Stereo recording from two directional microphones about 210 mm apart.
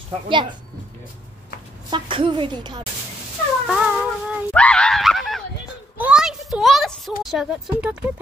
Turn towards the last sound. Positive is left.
turn(degrees=-5)  # may be behind; listen again after turning